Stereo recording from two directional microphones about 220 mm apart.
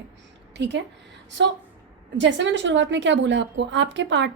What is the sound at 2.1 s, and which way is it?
A woman's voice, 55° right (ahead or behind).